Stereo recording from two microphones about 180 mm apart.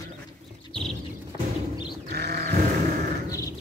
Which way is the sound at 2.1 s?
60° right (ahead or behind).